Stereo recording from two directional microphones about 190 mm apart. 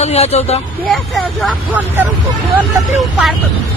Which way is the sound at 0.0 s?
35° left (ahead or behind).